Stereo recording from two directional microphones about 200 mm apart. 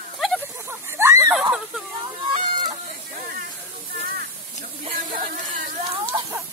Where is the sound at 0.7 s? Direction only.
15° right (ahead or behind).